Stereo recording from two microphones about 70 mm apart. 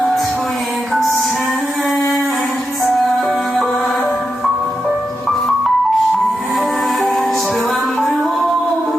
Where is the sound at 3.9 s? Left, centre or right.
Left.